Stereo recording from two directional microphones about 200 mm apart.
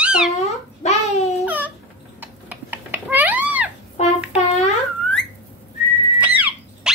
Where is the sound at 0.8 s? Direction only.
35° left (ahead or behind).